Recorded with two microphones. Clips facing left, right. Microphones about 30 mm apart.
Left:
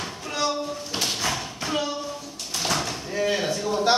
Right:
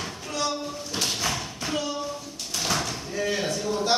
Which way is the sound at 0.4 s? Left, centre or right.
Centre.